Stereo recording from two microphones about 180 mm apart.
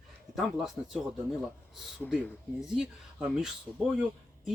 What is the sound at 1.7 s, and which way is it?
Speech, 5° right (ahead or behind).